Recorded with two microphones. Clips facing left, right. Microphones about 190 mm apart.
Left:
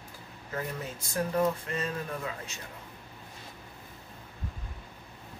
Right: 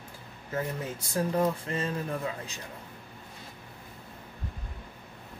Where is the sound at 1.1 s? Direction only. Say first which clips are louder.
Right 1 dB; 30° right (ahead or behind).